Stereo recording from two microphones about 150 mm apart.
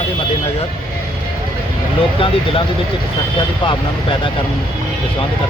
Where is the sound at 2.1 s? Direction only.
35° left (ahead or behind).